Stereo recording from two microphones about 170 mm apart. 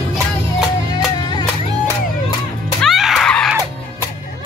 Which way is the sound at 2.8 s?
Centre (ahead or behind).